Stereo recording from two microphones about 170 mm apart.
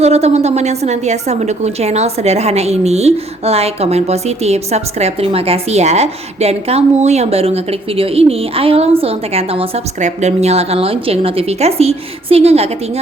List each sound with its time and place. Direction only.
0.0 s a woman's voice: 40° right (ahead or behind)